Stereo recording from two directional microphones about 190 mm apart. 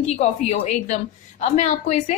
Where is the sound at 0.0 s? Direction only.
35° left (ahead or behind).